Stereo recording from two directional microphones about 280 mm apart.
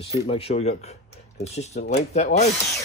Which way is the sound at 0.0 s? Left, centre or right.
Left.